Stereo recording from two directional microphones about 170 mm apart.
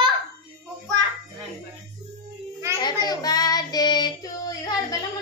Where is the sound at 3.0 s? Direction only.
25° left (ahead or behind).